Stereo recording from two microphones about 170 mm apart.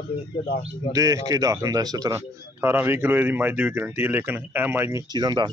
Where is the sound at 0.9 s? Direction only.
20° right (ahead or behind).